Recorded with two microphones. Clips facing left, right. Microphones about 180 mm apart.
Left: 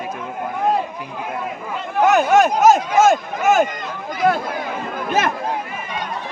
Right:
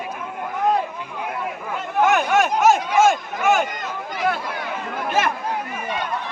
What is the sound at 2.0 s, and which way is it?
Speech, 40° left (ahead or behind).